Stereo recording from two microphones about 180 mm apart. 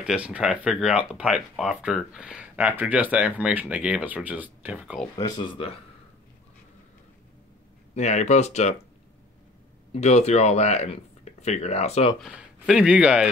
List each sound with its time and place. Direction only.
0.0 s speech: 5° right (ahead or behind)
5.1 s speech: 20° left (ahead or behind)
7.9 s speech: 40° left (ahead or behind)
9.9 s speech: 40° left (ahead or behind)
12.2 s speech: 5° right (ahead or behind)